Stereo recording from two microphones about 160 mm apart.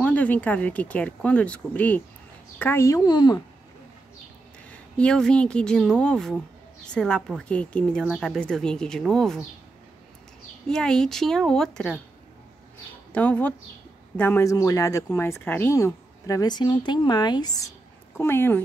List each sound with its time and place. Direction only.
0.0 s speech: 10° left (ahead or behind); by 3.3 s 25° left (ahead or behind)
4.6 s a woman's voice: 5° left (ahead or behind)
10.7 s a woman's voice: 5° left (ahead or behind)
13.1 s speech: 10° left (ahead or behind)